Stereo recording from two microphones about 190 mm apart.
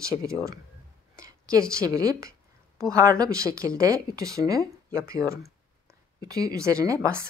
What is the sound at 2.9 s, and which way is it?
Speech, 20° right (ahead or behind).